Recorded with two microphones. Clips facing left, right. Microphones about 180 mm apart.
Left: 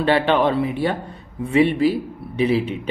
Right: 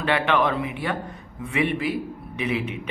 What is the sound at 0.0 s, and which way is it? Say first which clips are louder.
A man's voice: left 5 dB; 30° left (ahead or behind).